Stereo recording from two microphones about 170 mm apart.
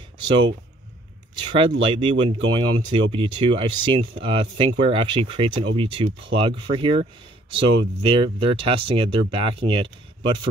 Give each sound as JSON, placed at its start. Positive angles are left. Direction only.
{"t": 1.4, "sound": "speech", "side_deg": -30}